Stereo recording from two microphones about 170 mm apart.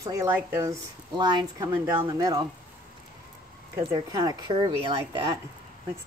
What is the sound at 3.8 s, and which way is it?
A woman's voice, 25° right (ahead or behind).